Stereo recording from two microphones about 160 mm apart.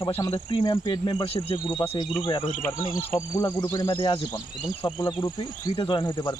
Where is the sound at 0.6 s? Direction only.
30° left (ahead or behind).